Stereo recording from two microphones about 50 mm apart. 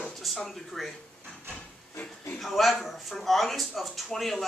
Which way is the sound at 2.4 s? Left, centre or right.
Centre.